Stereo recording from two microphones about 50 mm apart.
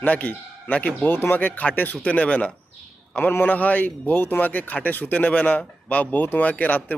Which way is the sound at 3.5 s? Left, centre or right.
Left.